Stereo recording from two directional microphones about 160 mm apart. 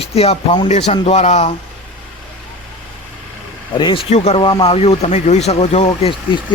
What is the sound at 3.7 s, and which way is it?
Speech, 30° left (ahead or behind).